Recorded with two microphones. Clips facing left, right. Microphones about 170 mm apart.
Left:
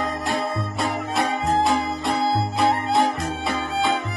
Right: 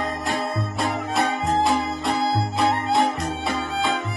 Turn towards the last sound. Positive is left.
turn(degrees=0)  # may be behind; listen again after turning